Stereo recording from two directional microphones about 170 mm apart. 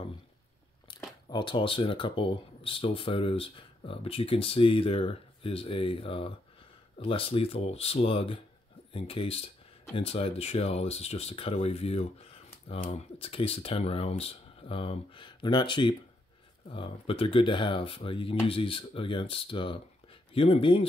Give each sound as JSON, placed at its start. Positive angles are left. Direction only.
{"t": 1.3, "sound": "speech", "side_deg": 30}